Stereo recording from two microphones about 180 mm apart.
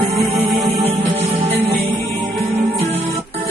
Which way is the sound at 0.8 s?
35° right (ahead or behind).